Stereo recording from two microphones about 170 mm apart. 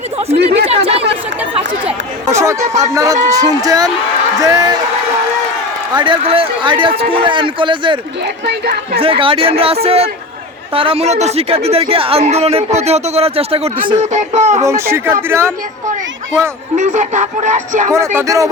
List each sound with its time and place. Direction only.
0.4 s speech: 35° right (ahead or behind)
2.2 s speech: 15° right (ahead or behind)
6.0 s speech: 30° right (ahead or behind)
8.6 s a woman's voice: 65° right (ahead or behind)
9.0 s speech: 30° right (ahead or behind)
14.1 s speech: 45° right (ahead or behind)
14.6 s speech: 15° right (ahead or behind)
16.7 s speech: 45° right (ahead or behind)
17.9 s speech: 15° right (ahead or behind)